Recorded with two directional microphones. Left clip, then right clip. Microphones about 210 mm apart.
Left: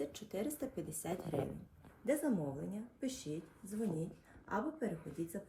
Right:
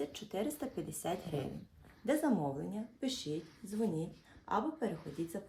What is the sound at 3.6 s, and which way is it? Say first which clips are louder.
Speech: right 3 dB; 20° left (ahead or behind).